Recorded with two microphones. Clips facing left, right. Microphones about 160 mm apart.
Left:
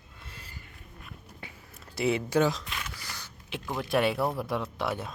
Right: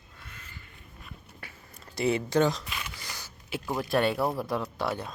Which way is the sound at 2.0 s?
Centre (ahead or behind).